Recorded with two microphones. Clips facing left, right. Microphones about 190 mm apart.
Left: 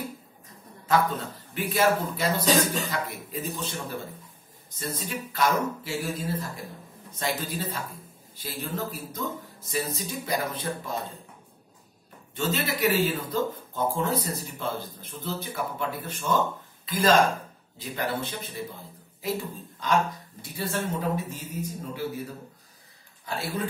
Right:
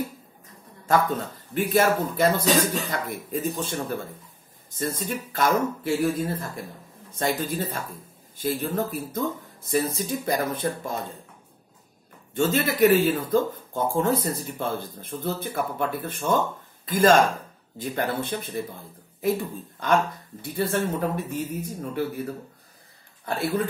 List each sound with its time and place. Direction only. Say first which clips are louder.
0.8 s a man's voice: right 2 dB; 50° right (ahead or behind)
12.4 s a man's voice: right 7 dB; 50° right (ahead or behind)
23.2 s speech: right 5 dB; 60° right (ahead or behind)